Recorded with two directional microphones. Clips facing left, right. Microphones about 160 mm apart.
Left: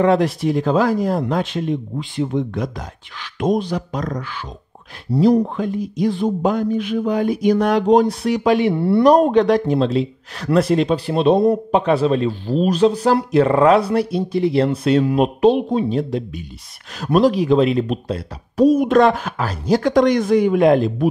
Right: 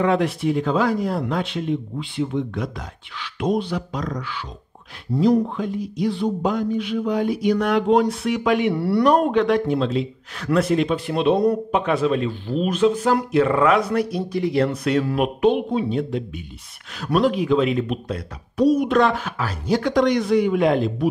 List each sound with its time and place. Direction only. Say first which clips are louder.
0.0 s a man's voice: left 4 dB; 35° left (ahead or behind)
9.0 s a man's voice: left 5 dB; 35° left (ahead or behind)
18.6 s speech: left 4 dB; 45° left (ahead or behind)